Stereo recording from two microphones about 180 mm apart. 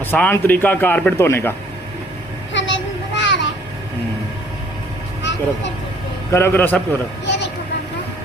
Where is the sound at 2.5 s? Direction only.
90° left.